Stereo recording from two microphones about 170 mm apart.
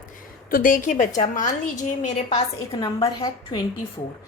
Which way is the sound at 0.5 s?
55° left (ahead or behind).